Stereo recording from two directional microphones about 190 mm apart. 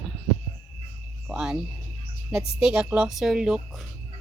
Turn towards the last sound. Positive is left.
turn(degrees=0)  # may be behind; listen again after turning